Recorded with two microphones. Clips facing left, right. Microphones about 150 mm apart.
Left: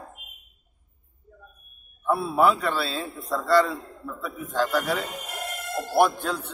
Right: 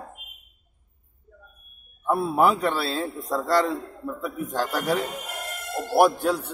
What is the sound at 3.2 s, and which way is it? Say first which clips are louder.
A man's voice: left 2 dB; 15° right (ahead or behind).